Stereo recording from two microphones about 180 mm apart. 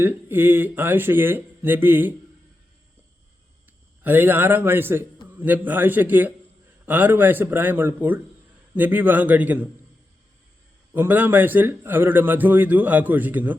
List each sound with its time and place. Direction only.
0.0 s a man's voice: 10° right (ahead or behind)
4.0 s a man's voice: 10° right (ahead or behind)
10.9 s a man's voice: 10° right (ahead or behind)